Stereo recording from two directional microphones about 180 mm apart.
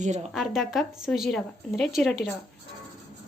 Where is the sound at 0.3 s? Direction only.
Centre (ahead or behind).